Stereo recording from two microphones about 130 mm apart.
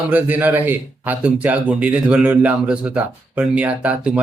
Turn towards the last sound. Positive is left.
turn(degrees=-10)  # may be behind; listen again after turning